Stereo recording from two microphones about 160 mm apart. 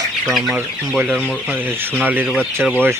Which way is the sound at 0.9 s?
10° right (ahead or behind).